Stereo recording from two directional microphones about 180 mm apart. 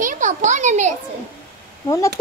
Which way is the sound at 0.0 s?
45° right (ahead or behind).